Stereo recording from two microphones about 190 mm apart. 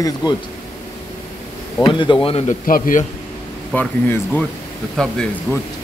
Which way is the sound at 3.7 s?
10° left (ahead or behind).